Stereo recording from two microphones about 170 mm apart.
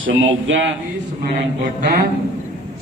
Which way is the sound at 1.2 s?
60° right (ahead or behind).